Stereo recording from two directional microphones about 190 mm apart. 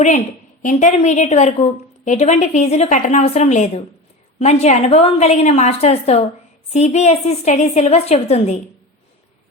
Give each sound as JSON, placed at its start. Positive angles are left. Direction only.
{"t": 0.6, "sound": "a woman's voice", "side_deg": 40}